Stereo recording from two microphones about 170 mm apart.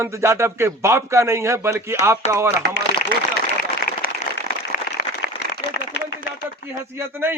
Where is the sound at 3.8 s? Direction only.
60° left (ahead or behind).